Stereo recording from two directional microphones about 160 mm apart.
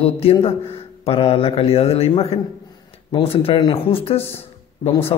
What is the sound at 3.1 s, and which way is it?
Speech, 35° left (ahead or behind).